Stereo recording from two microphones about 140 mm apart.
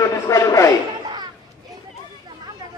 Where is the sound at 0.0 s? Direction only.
20° left (ahead or behind).